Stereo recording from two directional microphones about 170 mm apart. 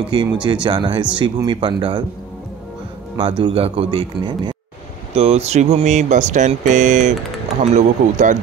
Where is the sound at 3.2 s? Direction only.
30° right (ahead or behind); by 8.4 s 45° right (ahead or behind).